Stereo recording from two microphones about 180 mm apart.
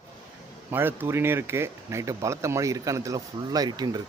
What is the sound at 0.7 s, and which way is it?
Speech, 10° right (ahead or behind).